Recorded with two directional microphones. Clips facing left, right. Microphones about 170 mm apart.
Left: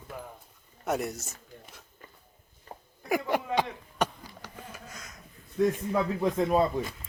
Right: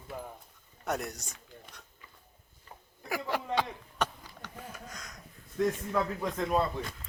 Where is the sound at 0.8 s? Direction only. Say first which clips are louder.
Left 4 dB; centre (ahead or behind).